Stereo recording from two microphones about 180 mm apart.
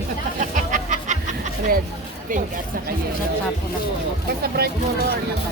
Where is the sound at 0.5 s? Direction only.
45° right (ahead or behind).